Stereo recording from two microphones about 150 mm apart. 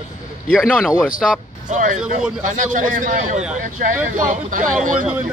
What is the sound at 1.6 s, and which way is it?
Speech, 55° right (ahead or behind).